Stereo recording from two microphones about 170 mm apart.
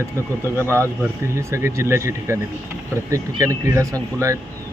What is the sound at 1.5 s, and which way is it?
Speech, 15° right (ahead or behind).